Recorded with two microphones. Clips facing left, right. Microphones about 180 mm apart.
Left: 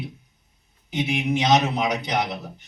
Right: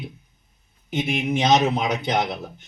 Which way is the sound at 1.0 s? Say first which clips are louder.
Right 1 dB; 50° right (ahead or behind).